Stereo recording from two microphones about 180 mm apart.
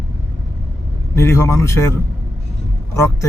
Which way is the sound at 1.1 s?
15° left (ahead or behind).